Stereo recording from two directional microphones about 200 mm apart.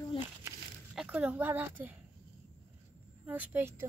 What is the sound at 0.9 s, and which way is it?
Speech, 5° right (ahead or behind).